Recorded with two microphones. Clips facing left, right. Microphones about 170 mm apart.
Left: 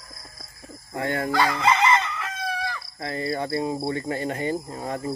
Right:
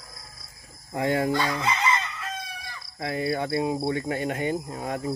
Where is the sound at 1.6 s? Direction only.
90° left.